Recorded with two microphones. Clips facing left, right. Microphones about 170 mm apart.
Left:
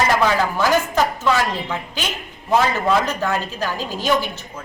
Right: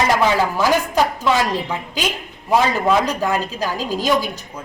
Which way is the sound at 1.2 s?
10° right (ahead or behind).